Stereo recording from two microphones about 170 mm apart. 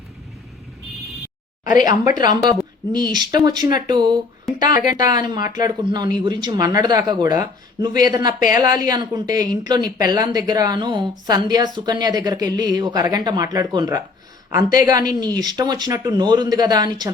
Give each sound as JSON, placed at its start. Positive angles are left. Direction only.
{"t": 1.6, "sound": "speech", "side_deg": 50}
{"t": 2.0, "sound": "speech", "side_deg": -20}
{"t": 4.5, "sound": "speech", "side_deg": 0}
{"t": 4.9, "sound": "speech", "side_deg": -25}